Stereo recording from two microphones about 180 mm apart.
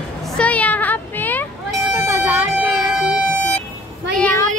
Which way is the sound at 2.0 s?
15° right (ahead or behind).